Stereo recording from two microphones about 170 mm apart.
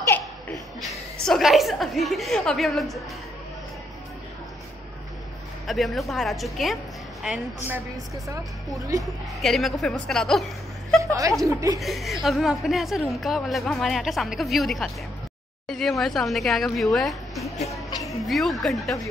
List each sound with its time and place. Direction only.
0.0 s laughter: 15° left (ahead or behind)
1.2 s a woman's voice: centre (ahead or behind)
5.7 s a woman's voice: centre (ahead or behind)
7.2 s a woman's voice: 10° right (ahead or behind)
9.4 s a woman's voice: centre (ahead or behind)
11.0 s a woman's voice: 20° right (ahead or behind)
11.8 s a woman's voice: centre (ahead or behind)